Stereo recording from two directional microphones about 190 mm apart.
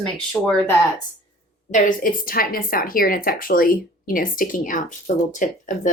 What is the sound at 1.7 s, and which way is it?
A woman's voice, 45° left (ahead or behind).